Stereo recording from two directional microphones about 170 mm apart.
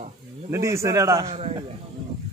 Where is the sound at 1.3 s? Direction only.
35° right (ahead or behind).